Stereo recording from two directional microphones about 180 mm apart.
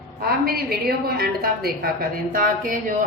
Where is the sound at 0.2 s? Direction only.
55° right (ahead or behind).